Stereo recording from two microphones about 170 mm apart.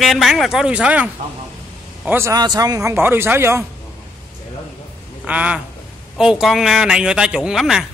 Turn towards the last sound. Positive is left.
turn(degrees=-5)  # may be behind; listen again after turning